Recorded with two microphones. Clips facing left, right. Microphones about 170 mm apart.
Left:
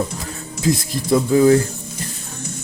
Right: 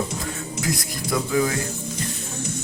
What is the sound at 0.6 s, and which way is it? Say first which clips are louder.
Speech: left 9 dB; 25° left (ahead or behind).